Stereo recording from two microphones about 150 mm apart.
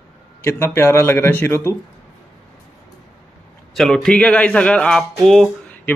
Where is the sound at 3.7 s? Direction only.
Centre (ahead or behind).